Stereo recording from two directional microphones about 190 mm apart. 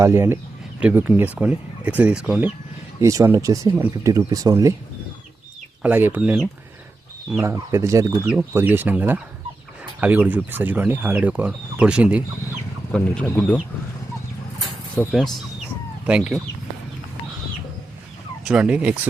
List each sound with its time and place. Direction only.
0.0 s speech: 15° right (ahead or behind)
5.8 s speech: 10° right (ahead or behind)
12.9 s speech: 5° left (ahead or behind)
15.0 s speech: 10° left (ahead or behind)
16.0 s speech: 5° right (ahead or behind)
18.4 s speech: 5° right (ahead or behind)